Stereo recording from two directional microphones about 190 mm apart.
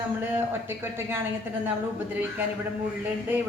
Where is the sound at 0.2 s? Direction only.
10° right (ahead or behind).